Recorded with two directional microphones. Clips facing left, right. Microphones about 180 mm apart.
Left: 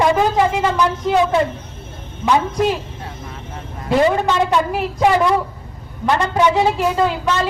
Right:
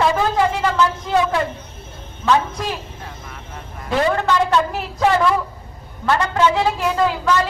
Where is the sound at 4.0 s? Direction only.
15° left (ahead or behind).